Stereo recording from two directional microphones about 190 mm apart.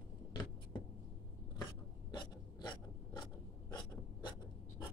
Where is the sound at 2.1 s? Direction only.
25° left (ahead or behind).